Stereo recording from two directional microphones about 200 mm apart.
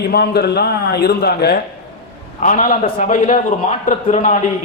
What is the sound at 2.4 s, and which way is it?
A man's voice, 40° left (ahead or behind).